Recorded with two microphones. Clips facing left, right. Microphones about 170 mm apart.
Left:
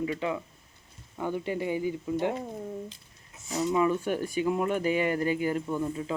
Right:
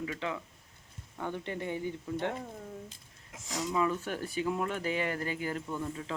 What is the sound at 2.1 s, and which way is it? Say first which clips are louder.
Speech: left 4 dB; 20° left (ahead or behind).